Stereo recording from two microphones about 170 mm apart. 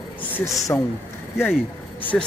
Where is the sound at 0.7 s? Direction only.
15° left (ahead or behind).